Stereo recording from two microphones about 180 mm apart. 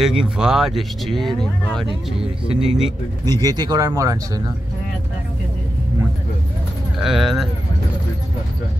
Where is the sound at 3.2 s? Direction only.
20° right (ahead or behind).